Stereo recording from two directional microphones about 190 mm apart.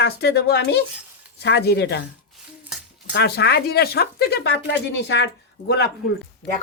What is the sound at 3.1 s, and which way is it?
Speech, 60° left (ahead or behind).